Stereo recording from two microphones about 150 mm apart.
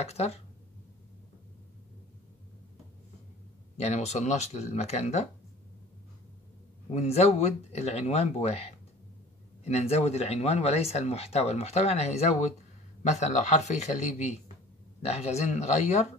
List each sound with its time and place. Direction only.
0.0 s speech: 45° left (ahead or behind)
3.7 s speech: 45° left (ahead or behind)
6.9 s speech: 45° left (ahead or behind)